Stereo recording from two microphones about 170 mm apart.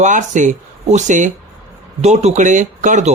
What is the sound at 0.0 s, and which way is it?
Speech, 45° right (ahead or behind).